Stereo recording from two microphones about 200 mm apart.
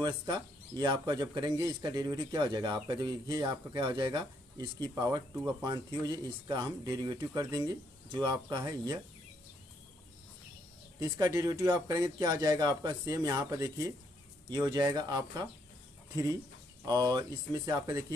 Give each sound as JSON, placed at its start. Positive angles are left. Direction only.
{"t": 0.0, "sound": "speech", "side_deg": -20}
{"t": 11.0, "sound": "speech", "side_deg": -15}
{"t": 16.8, "sound": "speech", "side_deg": -20}